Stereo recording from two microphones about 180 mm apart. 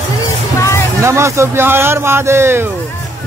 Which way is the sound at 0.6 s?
15° left (ahead or behind).